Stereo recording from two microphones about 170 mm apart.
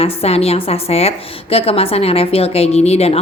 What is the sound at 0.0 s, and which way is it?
A woman's voice, 35° left (ahead or behind).